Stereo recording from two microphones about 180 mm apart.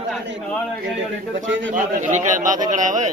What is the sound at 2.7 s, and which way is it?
Speech, 45° right (ahead or behind).